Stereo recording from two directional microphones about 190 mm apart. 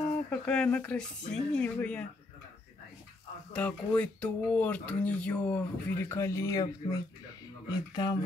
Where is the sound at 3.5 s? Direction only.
5° left (ahead or behind).